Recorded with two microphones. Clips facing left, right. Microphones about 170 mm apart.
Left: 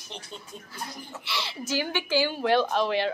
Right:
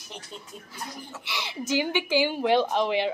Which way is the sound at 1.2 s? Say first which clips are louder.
Even; 15° right (ahead or behind).